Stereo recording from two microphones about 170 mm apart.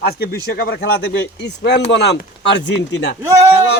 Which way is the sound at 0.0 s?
65° left (ahead or behind).